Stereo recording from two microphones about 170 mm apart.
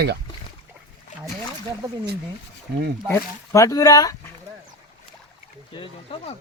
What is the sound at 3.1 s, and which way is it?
Speech, 20° left (ahead or behind).